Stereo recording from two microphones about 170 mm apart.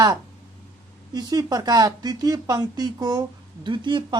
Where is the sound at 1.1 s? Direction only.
25° right (ahead or behind).